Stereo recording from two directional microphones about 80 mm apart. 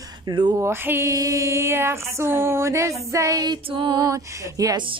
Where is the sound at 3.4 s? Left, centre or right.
Right.